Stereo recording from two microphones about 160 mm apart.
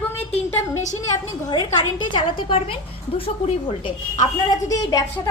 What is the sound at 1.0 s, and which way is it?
A woman's voice, 25° left (ahead or behind).